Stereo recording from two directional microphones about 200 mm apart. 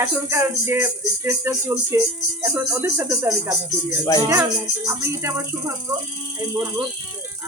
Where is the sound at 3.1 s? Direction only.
5° right (ahead or behind).